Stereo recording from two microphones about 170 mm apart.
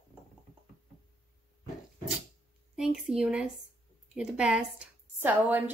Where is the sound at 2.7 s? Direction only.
5° right (ahead or behind).